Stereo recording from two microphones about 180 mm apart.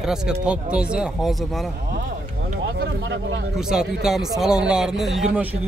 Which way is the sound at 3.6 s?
5° right (ahead or behind).